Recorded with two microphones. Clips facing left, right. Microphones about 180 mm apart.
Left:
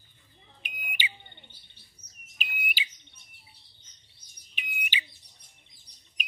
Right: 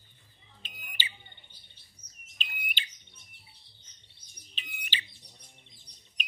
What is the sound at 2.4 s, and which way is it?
Bird, 5° left (ahead or behind).